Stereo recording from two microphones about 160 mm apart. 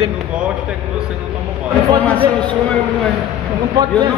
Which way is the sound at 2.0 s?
10° left (ahead or behind).